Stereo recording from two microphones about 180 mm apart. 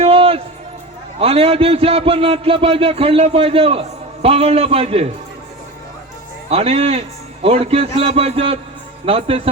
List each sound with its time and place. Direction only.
0.0 s a sound: 30° right (ahead or behind)
1.2 s a man's voice: 30° right (ahead or behind)
6.5 s a man's voice: 35° right (ahead or behind)